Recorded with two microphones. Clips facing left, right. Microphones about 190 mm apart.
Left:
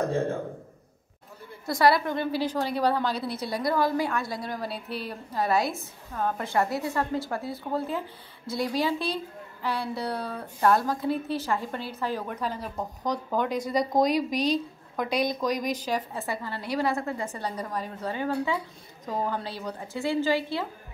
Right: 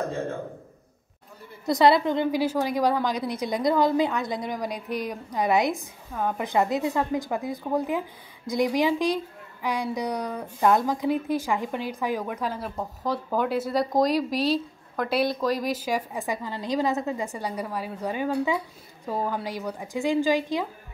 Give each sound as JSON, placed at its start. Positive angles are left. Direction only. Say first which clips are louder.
{"t": 1.7, "sound": "a woman's voice", "louder": "right 3 dB", "side_deg": -20}